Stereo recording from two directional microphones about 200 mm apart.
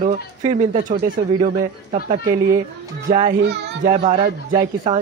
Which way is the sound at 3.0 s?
40° right (ahead or behind).